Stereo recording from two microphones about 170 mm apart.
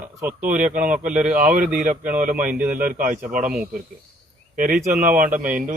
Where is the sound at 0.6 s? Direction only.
50° right (ahead or behind).